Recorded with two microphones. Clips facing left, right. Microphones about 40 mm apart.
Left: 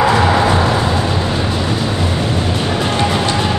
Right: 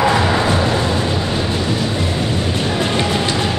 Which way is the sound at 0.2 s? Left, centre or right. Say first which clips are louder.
Left 3 dB; centre.